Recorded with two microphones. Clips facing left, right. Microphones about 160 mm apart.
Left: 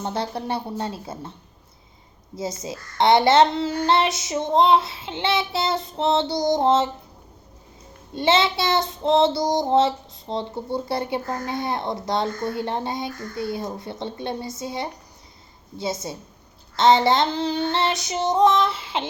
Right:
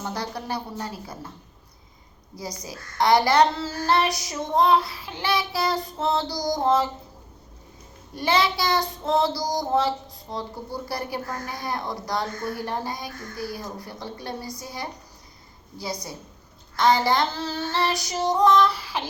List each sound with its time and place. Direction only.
0.0 s child singing: 25° left (ahead or behind)
2.3 s child singing: 25° left (ahead or behind)
8.1 s child singing: 25° left (ahead or behind)